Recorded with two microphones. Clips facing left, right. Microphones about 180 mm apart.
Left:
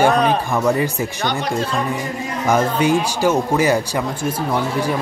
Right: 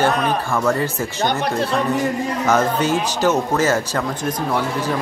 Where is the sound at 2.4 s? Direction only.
10° left (ahead or behind).